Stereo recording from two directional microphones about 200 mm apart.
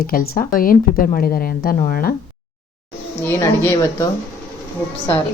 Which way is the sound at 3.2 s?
15° left (ahead or behind).